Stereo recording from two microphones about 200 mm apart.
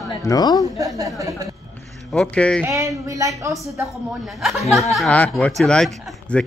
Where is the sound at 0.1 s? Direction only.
20° left (ahead or behind).